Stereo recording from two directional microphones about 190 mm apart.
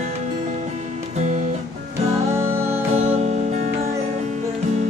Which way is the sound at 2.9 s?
35° right (ahead or behind).